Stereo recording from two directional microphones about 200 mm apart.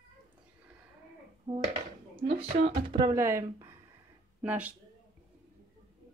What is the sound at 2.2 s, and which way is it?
Speech, 30° right (ahead or behind).